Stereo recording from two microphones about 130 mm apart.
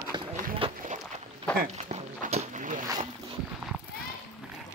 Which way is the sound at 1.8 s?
55° right (ahead or behind).